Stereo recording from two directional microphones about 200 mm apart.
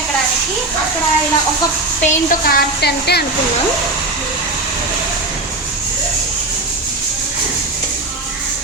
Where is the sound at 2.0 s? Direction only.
45° left (ahead or behind).